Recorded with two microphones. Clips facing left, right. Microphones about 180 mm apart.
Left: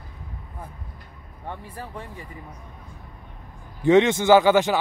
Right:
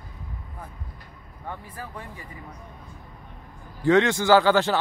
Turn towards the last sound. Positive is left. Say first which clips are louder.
# left 2 dB
turn(degrees=15)  # may be behind; listen again after turning